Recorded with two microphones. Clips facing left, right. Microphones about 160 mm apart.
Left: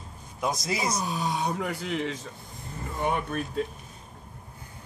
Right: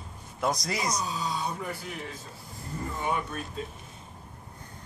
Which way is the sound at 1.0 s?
65° left (ahead or behind).